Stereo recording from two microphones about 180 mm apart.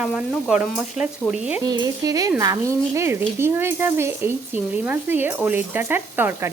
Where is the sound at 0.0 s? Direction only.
5° right (ahead or behind).